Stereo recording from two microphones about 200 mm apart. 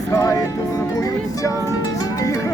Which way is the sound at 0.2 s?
15° left (ahead or behind).